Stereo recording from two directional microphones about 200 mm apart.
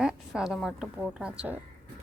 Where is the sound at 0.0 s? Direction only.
5° right (ahead or behind).